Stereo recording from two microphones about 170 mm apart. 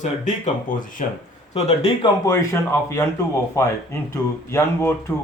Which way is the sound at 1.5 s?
35° left (ahead or behind).